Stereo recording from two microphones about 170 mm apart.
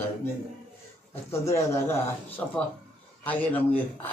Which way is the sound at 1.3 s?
15° left (ahead or behind).